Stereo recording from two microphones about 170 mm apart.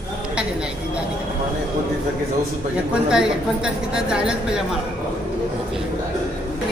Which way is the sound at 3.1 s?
5° right (ahead or behind).